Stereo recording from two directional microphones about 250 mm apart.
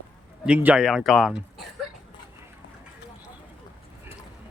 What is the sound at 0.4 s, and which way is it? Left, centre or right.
Speech, centre.